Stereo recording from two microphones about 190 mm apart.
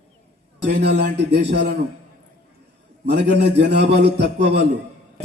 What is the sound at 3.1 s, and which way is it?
A man's voice, 65° right (ahead or behind).